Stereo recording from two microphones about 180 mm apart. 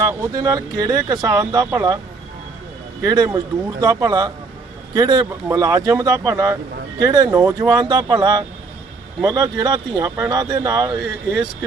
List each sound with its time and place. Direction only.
0.0 s speech: 15° right (ahead or behind)
3.0 s speech: 20° right (ahead or behind)